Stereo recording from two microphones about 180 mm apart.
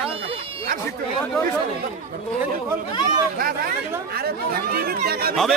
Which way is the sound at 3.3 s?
55° right (ahead or behind).